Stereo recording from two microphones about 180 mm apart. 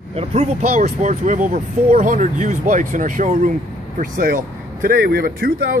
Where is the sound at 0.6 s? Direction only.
50° right (ahead or behind).